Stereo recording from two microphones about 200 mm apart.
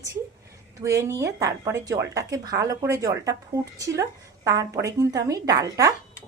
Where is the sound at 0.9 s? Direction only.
15° right (ahead or behind).